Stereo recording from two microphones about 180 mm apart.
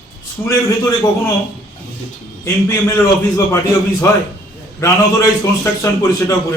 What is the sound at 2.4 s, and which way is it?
A man's voice, 15° left (ahead or behind).